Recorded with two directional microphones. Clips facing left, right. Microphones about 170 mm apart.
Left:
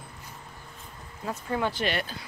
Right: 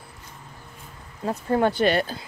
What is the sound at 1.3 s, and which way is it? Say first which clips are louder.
Speech: right 7 dB; 40° right (ahead or behind).